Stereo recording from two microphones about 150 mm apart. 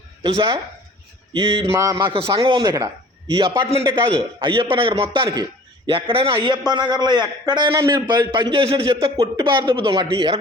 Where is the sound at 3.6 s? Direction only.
35° right (ahead or behind).